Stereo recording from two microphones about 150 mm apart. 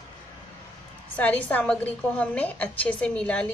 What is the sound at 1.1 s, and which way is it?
A woman's voice, 10° left (ahead or behind).